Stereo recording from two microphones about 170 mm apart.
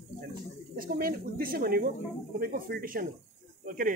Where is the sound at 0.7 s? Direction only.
60° right (ahead or behind).